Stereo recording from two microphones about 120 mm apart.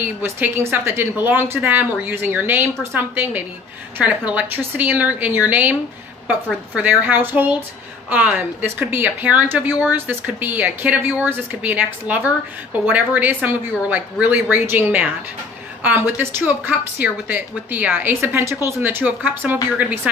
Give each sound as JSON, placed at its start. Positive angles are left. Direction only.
{"t": 0.0, "sound": "speech", "side_deg": -20}